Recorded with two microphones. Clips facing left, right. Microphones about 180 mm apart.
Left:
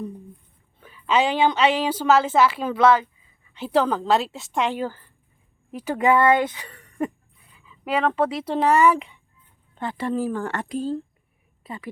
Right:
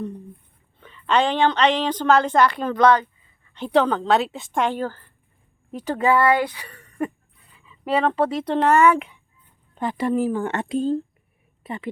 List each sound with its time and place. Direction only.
0.8 s a woman's voice: 5° left (ahead or behind)
4.7 s a woman's voice: 10° left (ahead or behind)
8.0 s a woman's voice: centre (ahead or behind)
9.7 s a woman's voice: 15° right (ahead or behind)